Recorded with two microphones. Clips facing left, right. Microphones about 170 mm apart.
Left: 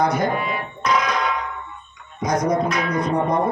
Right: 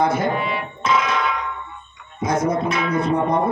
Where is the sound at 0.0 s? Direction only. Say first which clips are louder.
Right 1 dB; 25° right (ahead or behind).